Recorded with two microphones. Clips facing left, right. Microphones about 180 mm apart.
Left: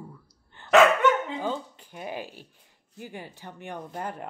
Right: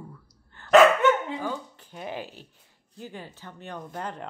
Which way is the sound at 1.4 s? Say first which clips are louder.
Left 2 dB; 15° left (ahead or behind).